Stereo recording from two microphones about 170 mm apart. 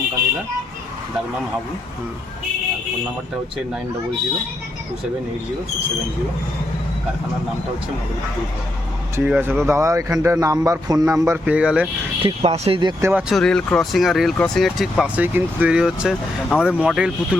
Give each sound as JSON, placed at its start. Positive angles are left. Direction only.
{"t": 9.1, "sound": "speech", "side_deg": -10}
{"t": 12.2, "sound": "speech", "side_deg": -35}
{"t": 13.0, "sound": "speech", "side_deg": -10}